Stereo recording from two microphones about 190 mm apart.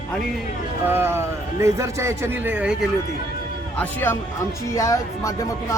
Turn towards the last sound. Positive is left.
turn(degrees=15)  # may be behind; listen again after turning